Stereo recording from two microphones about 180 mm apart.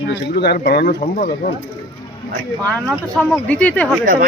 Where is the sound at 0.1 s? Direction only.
65° left (ahead or behind).